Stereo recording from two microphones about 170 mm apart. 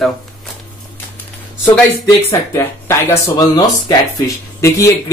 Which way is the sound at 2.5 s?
15° left (ahead or behind).